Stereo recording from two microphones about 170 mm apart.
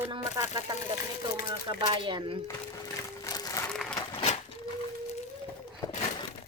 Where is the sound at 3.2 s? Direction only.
20° left (ahead or behind).